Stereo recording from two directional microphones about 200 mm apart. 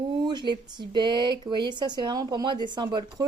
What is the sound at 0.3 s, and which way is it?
Speech, 20° right (ahead or behind).